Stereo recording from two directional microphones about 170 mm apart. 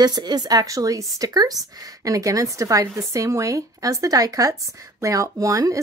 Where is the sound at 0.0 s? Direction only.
25° right (ahead or behind).